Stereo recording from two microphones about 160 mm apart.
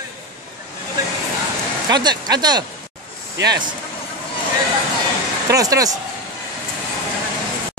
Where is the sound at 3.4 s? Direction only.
90° right.